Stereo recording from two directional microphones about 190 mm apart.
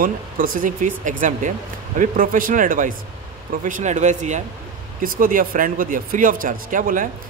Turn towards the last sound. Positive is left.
turn(degrees=-45)  # may be behind; listen again after turning